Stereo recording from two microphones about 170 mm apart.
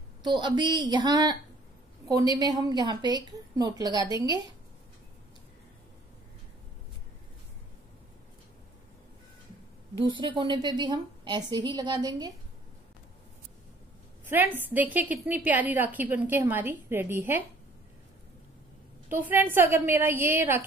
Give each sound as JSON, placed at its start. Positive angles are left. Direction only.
{"t": 0.2, "sound": "a woman's voice", "side_deg": -25}
{"t": 9.9, "sound": "a woman's voice", "side_deg": -30}
{"t": 14.3, "sound": "a woman's voice", "side_deg": -10}
{"t": 19.1, "sound": "a woman's voice", "side_deg": -10}